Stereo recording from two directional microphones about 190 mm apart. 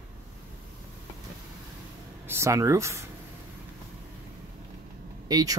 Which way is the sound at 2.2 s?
15° right (ahead or behind).